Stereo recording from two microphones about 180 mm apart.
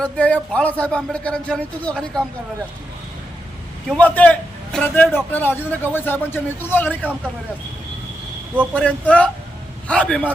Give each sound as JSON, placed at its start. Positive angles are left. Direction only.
{"t": 0.0, "sound": "a man's voice", "side_deg": 5}
{"t": 3.8, "sound": "a man's voice", "side_deg": 5}
{"t": 8.7, "sound": "a man's voice", "side_deg": 5}